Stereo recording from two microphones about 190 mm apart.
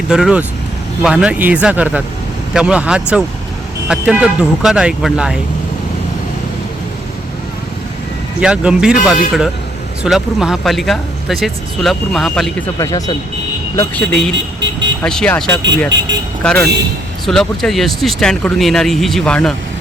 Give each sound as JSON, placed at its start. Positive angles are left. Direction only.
{"t": 0.1, "sound": "speech", "side_deg": -5}
{"t": 8.4, "sound": "speech", "side_deg": -5}
{"t": 12.8, "sound": "speech", "side_deg": 20}
{"t": 14.3, "sound": "vehicle", "side_deg": -75}
{"t": 15.0, "sound": "speech", "side_deg": 5}